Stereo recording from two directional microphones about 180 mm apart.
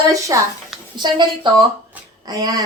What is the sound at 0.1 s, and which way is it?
A woman's voice, 15° right (ahead or behind).